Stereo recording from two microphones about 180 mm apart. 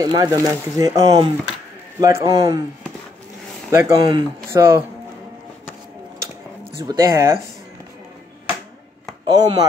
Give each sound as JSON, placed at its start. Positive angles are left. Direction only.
{"t": 0.0, "sound": "speech", "side_deg": -20}
{"t": 3.7, "sound": "speech", "side_deg": -15}
{"t": 6.8, "sound": "speech", "side_deg": -15}
{"t": 9.3, "sound": "speech", "side_deg": -20}